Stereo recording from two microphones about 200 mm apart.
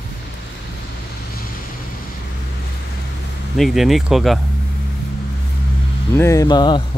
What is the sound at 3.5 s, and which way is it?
Speech, centre (ahead or behind).